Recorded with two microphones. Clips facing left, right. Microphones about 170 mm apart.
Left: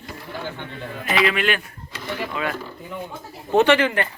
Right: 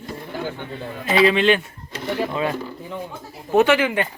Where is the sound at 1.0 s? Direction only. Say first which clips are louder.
Right 5 dB; 25° right (ahead or behind).